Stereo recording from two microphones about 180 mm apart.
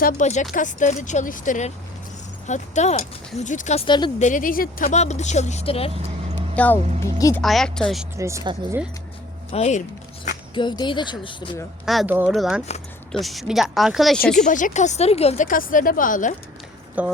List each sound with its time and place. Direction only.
0.0 s speech: 45° left (ahead or behind)
3.8 s speech: 25° left (ahead or behind)
4.2 s speech: 45° left (ahead or behind)
6.6 s speech: 10° left (ahead or behind)
7.4 s speech: centre (ahead or behind)
8.1 s speech: 15° right (ahead or behind)
9.5 s speech: 40° left (ahead or behind)
10.5 s speech: 25° left (ahead or behind)
11.9 s speech: centre (ahead or behind)
14.3 s speech: 45° left (ahead or behind)
17.0 s speech: 10° right (ahead or behind)